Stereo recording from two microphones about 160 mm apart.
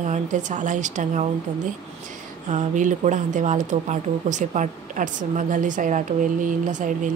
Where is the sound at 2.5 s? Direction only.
50° right (ahead or behind).